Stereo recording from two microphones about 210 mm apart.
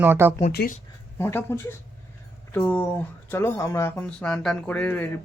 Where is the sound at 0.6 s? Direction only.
50° left (ahead or behind).